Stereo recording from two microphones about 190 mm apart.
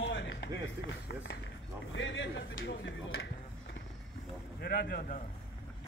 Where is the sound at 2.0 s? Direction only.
75° left (ahead or behind).